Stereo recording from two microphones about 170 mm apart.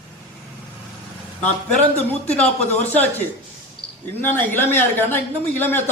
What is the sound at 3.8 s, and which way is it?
Cricket, 30° left (ahead or behind).